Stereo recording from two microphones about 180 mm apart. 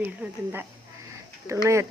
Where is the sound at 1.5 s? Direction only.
15° right (ahead or behind).